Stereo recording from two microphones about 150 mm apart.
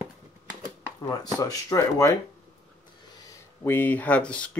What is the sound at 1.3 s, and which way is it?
Speech, 25° left (ahead or behind).